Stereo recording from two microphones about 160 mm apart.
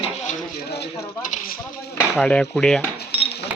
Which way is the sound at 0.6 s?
90° left.